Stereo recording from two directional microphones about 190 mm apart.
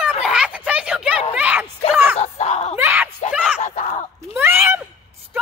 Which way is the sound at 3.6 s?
40° left (ahead or behind).